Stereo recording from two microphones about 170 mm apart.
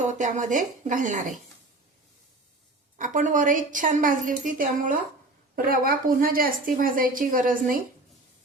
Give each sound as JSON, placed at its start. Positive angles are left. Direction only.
{"t": 0.0, "sound": "a woman's voice", "side_deg": -45}
{"t": 3.0, "sound": "a woman's voice", "side_deg": -50}